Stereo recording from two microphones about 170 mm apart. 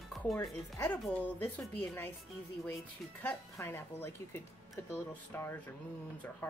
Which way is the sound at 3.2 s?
10° left (ahead or behind).